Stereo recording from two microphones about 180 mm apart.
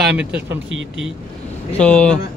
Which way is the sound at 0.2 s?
5° right (ahead or behind).